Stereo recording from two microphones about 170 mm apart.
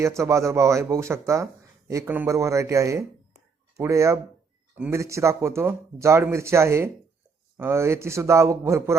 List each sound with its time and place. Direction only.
0.0 s speech: 15° right (ahead or behind)